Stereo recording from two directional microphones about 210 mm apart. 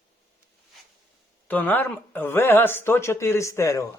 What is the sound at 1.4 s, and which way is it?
Speech, 10° left (ahead or behind).